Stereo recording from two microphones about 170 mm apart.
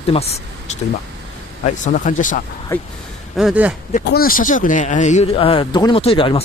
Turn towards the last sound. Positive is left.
turn(degrees=30)  # may be behind; listen again after turning